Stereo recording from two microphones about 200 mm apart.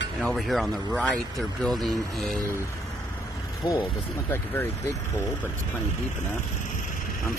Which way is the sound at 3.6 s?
20° left (ahead or behind).